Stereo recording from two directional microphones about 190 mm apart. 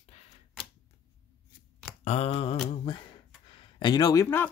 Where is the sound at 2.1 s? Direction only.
30° left (ahead or behind).